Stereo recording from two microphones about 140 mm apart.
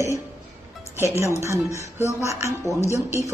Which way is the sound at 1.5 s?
20° left (ahead or behind).